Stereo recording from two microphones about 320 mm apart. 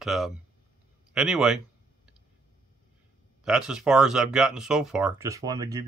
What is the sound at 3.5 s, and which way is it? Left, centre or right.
Speech, centre.